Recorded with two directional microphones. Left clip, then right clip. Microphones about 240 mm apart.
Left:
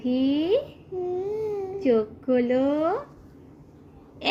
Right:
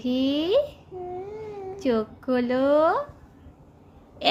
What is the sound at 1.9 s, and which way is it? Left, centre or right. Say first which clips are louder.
A woman's voice: left 3 dB; right.